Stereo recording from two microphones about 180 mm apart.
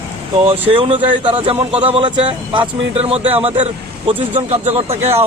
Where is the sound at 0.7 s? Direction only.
30° right (ahead or behind).